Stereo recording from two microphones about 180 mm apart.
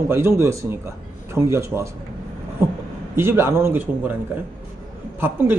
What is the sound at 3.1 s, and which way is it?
A man's voice, 15° right (ahead or behind).